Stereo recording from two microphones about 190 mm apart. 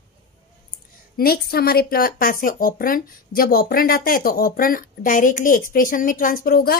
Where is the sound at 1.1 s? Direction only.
55° left (ahead or behind).